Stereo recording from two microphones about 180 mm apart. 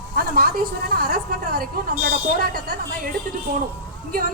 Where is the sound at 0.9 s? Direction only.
60° right (ahead or behind).